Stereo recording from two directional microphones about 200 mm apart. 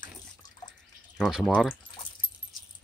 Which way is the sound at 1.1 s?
5° left (ahead or behind).